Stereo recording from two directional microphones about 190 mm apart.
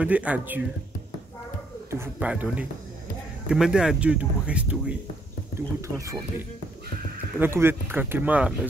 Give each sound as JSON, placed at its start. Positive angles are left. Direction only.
{"t": 0.0, "sound": "speech", "side_deg": -5}
{"t": 1.9, "sound": "speech", "side_deg": -10}
{"t": 7.3, "sound": "speech", "side_deg": -10}